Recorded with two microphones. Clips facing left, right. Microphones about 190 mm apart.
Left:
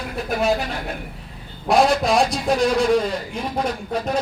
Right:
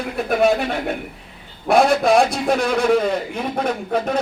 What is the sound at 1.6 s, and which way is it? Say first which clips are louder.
Speech: right 2 dB; 55° right (ahead or behind).